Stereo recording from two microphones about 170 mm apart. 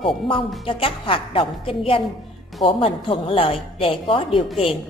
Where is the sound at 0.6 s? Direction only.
30° left (ahead or behind).